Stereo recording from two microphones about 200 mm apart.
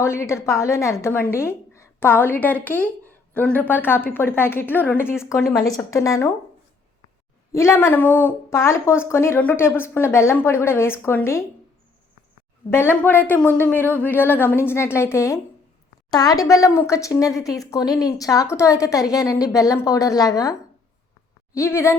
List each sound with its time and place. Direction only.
0.0 s a woman's voice: 15° left (ahead or behind)
7.5 s speech: 15° left (ahead or behind)
12.7 s a woman's voice: 10° left (ahead or behind)